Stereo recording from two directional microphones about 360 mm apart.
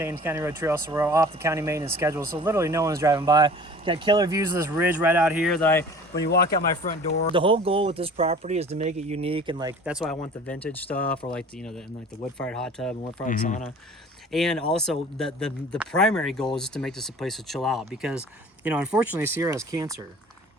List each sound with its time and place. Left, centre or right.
0.0 s speech: centre
6.2 s speech: left
7.3 s speech: centre
11.2 s speech: centre
12.4 s speech: centre
13.2 s speech: left
14.3 s speech: centre